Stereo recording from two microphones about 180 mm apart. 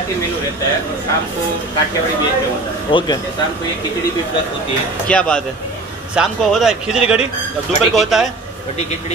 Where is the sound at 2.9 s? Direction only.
25° left (ahead or behind).